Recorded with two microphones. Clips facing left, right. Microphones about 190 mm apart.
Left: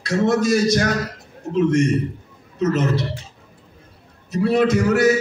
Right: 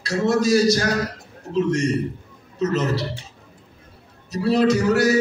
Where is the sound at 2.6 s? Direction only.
30° right (ahead or behind).